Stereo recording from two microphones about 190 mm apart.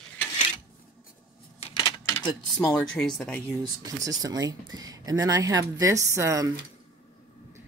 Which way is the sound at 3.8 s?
20° right (ahead or behind).